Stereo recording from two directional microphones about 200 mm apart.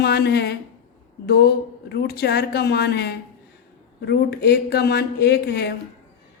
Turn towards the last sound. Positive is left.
turn(degrees=55)  # may be behind; listen again after turning